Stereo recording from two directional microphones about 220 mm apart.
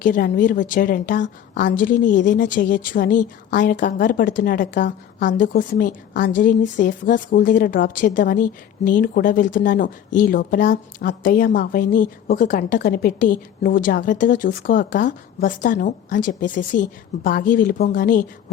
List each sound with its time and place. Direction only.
0.0 s a woman's voice: 40° left (ahead or behind)